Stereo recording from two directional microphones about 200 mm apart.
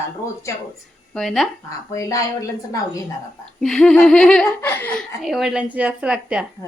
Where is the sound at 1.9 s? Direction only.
15° left (ahead or behind).